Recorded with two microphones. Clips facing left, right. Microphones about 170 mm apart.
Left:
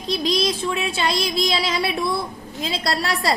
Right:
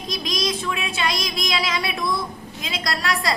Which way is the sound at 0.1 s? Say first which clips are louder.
Left 5 dB; 30° left (ahead or behind).